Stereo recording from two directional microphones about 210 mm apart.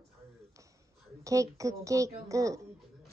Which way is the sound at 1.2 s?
15° right (ahead or behind).